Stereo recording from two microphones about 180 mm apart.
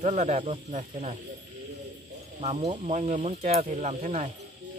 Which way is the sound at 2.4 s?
35° right (ahead or behind).